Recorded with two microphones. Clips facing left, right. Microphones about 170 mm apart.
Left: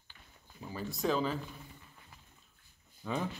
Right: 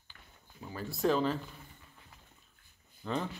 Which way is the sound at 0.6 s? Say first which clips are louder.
Right 3 dB; centre (ahead or behind).